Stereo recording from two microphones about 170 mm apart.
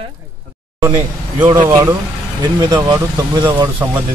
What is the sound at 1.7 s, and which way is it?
Speech, 20° right (ahead or behind).